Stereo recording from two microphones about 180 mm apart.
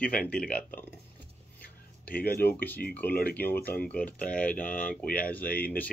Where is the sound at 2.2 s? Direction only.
10° left (ahead or behind).